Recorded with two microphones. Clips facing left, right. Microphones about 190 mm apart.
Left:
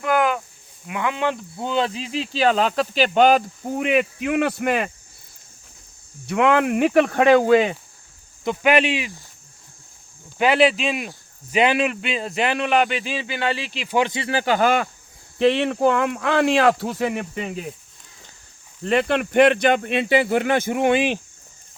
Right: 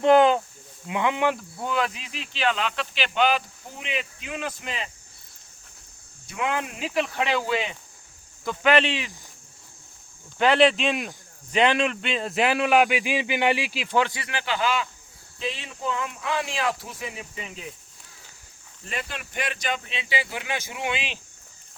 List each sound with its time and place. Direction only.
0.0 s a sound: 25° right (ahead or behind)
0.9 s speech: 20° right (ahead or behind)
1.5 s speech: 25° left (ahead or behind); by 4.9 s 65° left (ahead or behind)
6.2 s speech: 65° left (ahead or behind); by 7.8 s 50° left (ahead or behind)
8.4 s speech: 10° left (ahead or behind)
10.3 s a man's voice: 10° left (ahead or behind); by 13.7 s 15° right (ahead or behind)
13.9 s speech: 20° left (ahead or behind)
14.3 s speech: 40° left (ahead or behind)
15.4 s speech: 70° left (ahead or behind)
18.9 s speech: 65° left (ahead or behind)